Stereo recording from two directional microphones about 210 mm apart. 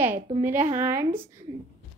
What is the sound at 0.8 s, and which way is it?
Speech, 10° right (ahead or behind).